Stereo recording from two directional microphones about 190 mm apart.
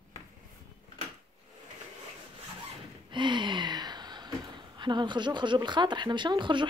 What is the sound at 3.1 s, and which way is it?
Speech, 25° right (ahead or behind).